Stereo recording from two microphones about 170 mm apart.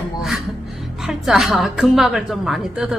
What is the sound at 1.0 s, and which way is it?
A woman's voice, 5° right (ahead or behind).